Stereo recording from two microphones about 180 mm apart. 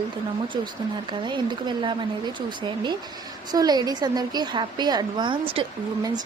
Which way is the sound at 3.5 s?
20° right (ahead or behind).